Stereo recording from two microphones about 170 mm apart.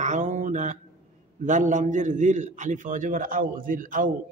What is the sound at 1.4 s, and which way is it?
A man's voice, 45° right (ahead or behind).